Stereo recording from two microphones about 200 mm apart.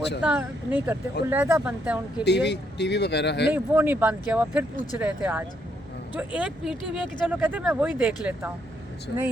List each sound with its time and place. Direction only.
0.2 s speech: 5° right (ahead or behind)
2.2 s speech: 55° left (ahead or behind)
3.5 s speech: 10° right (ahead or behind)